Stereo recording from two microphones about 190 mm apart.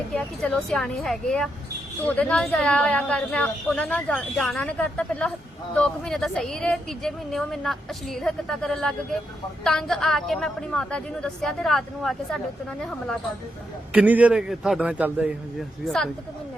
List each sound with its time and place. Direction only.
0.1 s a woman's voice: 5° left (ahead or behind)
13.9 s a man's voice: 10° right (ahead or behind)